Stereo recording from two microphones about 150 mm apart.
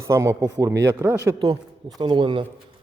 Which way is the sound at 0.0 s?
20° right (ahead or behind).